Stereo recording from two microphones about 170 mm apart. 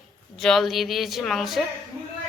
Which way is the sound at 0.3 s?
Centre (ahead or behind).